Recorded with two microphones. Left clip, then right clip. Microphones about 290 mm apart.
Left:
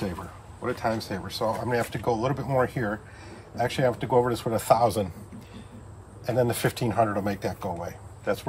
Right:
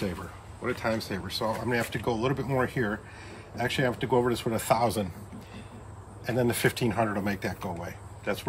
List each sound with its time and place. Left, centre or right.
0.0 s speech: centre
6.2 s speech: centre